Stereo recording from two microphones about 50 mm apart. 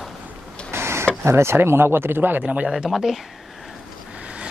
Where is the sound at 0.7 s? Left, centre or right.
Right.